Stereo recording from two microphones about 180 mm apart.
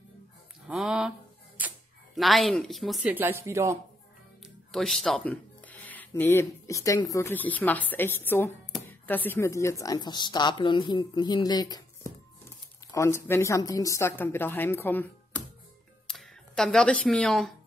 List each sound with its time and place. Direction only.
0.7 s speech: 5° right (ahead or behind)
2.1 s speech: centre (ahead or behind)
4.7 s speech: centre (ahead or behind)